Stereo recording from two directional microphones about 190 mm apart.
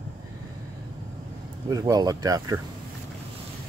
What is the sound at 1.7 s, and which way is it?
Speech, 20° right (ahead or behind).